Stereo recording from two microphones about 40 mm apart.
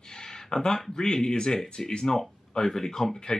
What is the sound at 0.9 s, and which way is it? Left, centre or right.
Speech, centre.